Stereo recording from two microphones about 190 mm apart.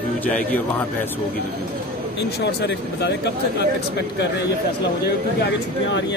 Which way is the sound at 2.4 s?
65° left (ahead or behind).